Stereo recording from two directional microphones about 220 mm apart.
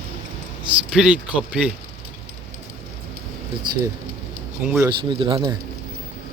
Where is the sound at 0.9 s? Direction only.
5° right (ahead or behind).